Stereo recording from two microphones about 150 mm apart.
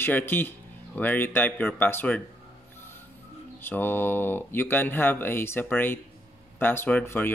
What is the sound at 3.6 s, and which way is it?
Speech, 15° left (ahead or behind).